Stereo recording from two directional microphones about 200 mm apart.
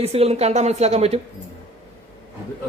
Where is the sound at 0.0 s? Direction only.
30° right (ahead or behind).